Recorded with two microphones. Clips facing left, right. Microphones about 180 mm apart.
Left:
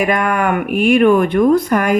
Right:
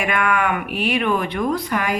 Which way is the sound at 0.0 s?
40° left (ahead or behind).